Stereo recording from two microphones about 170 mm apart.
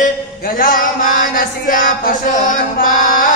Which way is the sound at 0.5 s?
55° left (ahead or behind).